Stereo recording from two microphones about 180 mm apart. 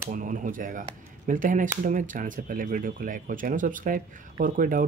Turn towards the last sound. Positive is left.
turn(degrees=-50)  # may be behind; listen again after turning